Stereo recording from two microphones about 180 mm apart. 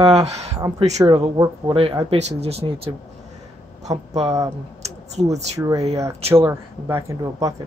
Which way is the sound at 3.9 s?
20° right (ahead or behind).